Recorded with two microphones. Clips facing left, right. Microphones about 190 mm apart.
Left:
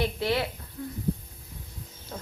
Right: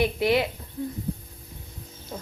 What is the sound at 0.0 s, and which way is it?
Speech, 15° right (ahead or behind).